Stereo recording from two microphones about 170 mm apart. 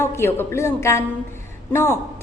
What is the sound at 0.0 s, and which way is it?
A woman's voice, 15° left (ahead or behind).